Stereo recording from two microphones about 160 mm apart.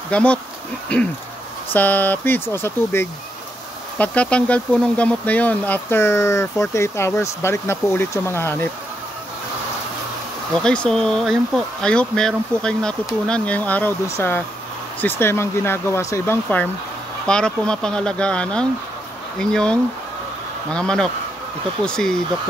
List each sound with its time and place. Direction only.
0.1 s speech: 5° left (ahead or behind)
10.6 s speech: 5° left (ahead or behind)